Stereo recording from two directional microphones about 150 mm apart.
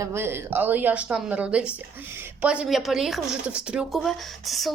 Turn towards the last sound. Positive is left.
turn(degrees=0)  # may be behind; listen again after turning